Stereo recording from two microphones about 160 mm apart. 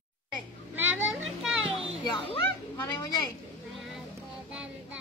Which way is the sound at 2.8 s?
20° left (ahead or behind).